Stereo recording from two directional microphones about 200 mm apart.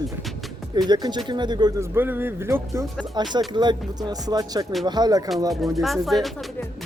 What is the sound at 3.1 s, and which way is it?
Music, 20° right (ahead or behind).